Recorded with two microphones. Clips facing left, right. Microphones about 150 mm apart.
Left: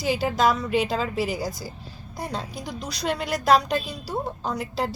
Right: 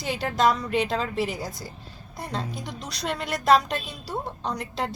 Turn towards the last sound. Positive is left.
turn(degrees=5)  # may be behind; listen again after turning